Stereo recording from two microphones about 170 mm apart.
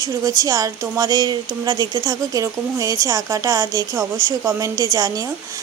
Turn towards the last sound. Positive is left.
turn(degrees=-20)  # may be behind; listen again after turning